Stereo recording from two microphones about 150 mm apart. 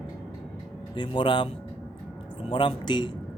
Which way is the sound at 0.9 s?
35° left (ahead or behind).